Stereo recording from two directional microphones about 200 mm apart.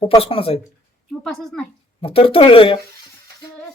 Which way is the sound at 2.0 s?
30° left (ahead or behind).